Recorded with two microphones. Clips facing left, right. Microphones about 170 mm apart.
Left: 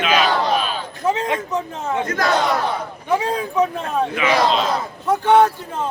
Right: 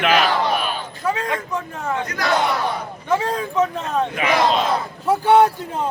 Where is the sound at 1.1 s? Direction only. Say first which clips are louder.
Left 2 dB; 25° left (ahead or behind).